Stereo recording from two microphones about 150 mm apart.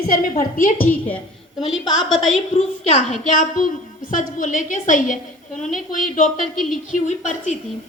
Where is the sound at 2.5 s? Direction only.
55° left (ahead or behind).